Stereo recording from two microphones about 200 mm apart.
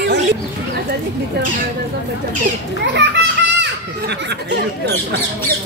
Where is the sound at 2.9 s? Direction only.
60° right (ahead or behind).